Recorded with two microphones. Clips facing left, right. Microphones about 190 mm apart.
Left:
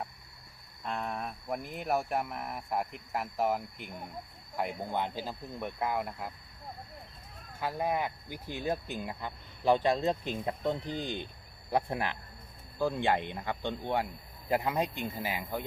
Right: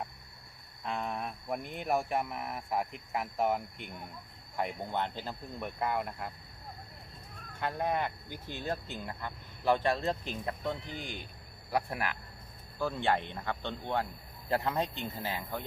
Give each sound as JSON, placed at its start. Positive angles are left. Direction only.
{"t": 0.9, "sound": "speech", "side_deg": 0}
{"t": 7.6, "sound": "speech", "side_deg": 5}